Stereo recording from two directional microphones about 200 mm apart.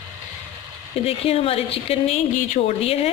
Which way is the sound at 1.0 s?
30° left (ahead or behind).